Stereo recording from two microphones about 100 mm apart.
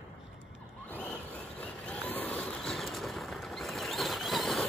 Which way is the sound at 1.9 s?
15° left (ahead or behind).